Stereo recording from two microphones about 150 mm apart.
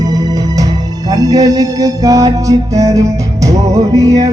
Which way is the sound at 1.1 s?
25° right (ahead or behind).